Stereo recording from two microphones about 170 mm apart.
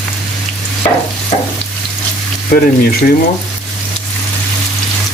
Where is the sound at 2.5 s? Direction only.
60° left (ahead or behind).